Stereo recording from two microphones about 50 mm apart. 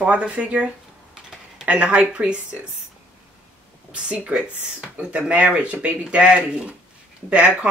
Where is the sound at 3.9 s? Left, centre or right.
Right.